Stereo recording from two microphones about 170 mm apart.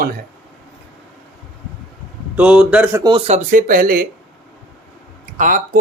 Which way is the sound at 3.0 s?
25° right (ahead or behind).